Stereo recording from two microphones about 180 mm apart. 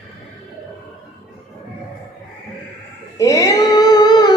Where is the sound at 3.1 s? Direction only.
15° left (ahead or behind).